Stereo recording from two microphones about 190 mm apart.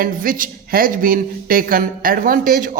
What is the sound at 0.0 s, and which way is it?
Speech, 45° right (ahead or behind).